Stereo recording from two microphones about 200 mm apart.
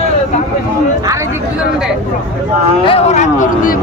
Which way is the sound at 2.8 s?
30° left (ahead or behind).